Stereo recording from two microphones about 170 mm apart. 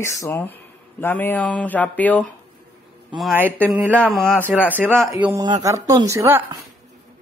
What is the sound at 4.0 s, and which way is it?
Speech, 10° left (ahead or behind).